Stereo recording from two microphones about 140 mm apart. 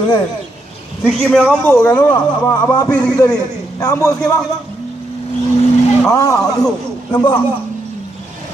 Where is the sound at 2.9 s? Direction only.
5° left (ahead or behind).